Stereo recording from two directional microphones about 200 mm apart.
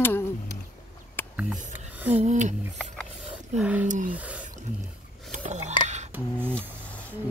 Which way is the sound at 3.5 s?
5° right (ahead or behind).